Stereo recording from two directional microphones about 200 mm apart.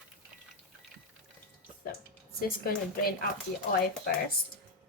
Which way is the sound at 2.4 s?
50° left (ahead or behind).